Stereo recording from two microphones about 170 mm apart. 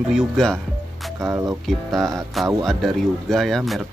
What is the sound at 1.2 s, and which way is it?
Speech, 20° right (ahead or behind).